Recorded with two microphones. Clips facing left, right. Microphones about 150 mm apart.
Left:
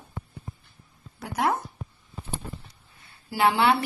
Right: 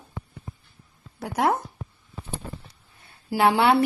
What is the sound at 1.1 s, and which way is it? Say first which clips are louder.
Speech: right 3 dB; 50° right (ahead or behind).